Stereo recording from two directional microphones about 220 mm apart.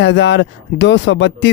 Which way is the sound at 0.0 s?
55° left (ahead or behind).